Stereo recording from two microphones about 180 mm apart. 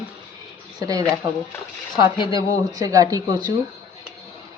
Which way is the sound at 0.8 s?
20° right (ahead or behind).